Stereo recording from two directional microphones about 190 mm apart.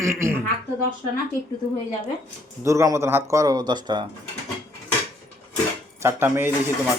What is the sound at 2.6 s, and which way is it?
Speech, 15° right (ahead or behind).